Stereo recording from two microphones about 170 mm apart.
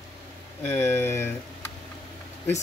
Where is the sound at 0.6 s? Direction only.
10° left (ahead or behind).